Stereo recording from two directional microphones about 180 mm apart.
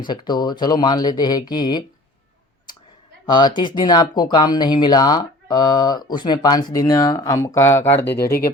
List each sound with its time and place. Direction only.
0.1 s speech: 25° left (ahead or behind)
3.2 s speech: 25° left (ahead or behind)
8.0 s speech: 60° left (ahead or behind)